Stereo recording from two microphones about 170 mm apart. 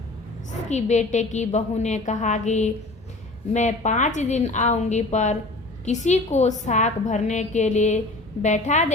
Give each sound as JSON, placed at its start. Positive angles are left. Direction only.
{"t": 0.7, "sound": "a woman's voice", "side_deg": 45}